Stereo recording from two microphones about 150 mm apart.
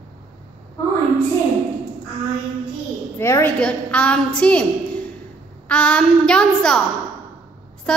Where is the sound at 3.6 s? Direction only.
10° left (ahead or behind).